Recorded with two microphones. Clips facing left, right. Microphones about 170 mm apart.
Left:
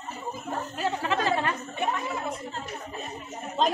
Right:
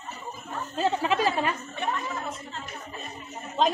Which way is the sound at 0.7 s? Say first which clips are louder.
Right 4 dB; 20° right (ahead or behind).